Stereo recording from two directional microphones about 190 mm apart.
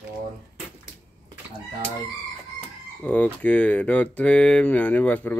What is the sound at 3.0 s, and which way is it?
Speech, 5° left (ahead or behind).